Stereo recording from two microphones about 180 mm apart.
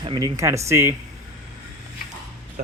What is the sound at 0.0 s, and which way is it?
Speech, 25° right (ahead or behind).